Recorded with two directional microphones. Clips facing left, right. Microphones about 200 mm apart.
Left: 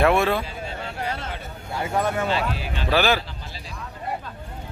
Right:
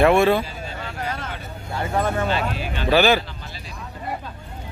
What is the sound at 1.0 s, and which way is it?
Vehicle, 30° left (ahead or behind).